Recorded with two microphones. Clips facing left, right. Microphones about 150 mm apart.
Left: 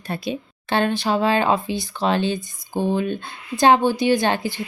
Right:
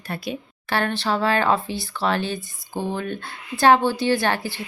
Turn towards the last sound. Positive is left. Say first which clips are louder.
# left 2 dB
turn(degrees=20)  # may be behind; listen again after turning